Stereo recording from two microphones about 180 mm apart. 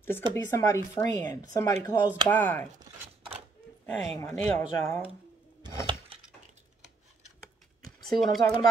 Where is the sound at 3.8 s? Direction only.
15° left (ahead or behind).